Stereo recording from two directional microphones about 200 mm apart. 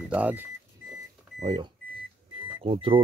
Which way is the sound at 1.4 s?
20° right (ahead or behind).